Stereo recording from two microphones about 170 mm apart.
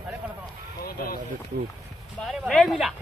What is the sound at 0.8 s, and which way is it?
Speech, 60° left (ahead or behind).